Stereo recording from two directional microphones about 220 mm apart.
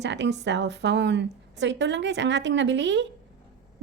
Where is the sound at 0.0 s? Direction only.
50° right (ahead or behind).